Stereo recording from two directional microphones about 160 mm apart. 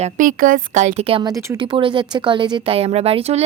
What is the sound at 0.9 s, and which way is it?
Speech, 35° right (ahead or behind).